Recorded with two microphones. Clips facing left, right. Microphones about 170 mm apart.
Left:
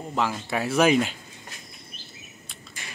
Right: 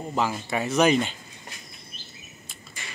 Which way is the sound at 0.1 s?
Centre (ahead or behind).